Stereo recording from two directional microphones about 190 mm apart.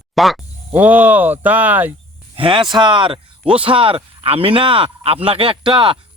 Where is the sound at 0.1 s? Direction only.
Centre (ahead or behind).